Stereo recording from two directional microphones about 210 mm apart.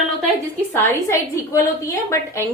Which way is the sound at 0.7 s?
10° left (ahead or behind).